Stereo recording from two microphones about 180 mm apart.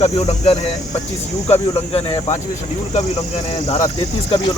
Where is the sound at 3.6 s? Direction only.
35° left (ahead or behind).